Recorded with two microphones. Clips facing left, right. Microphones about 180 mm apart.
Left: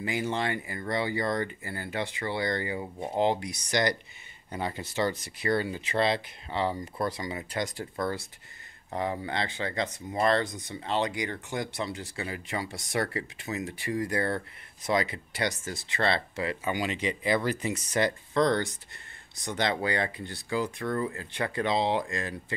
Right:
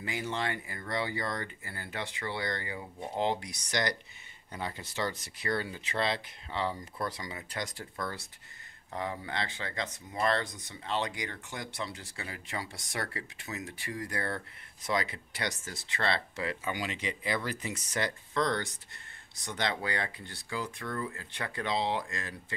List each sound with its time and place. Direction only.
0.0 s speech: 15° left (ahead or behind)
7.8 s speech: 30° left (ahead or behind)
20.8 s speech: 35° left (ahead or behind)
21.1 s speech: 20° left (ahead or behind)